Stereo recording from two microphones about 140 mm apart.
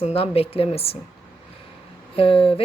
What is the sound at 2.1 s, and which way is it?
Speech, 40° left (ahead or behind).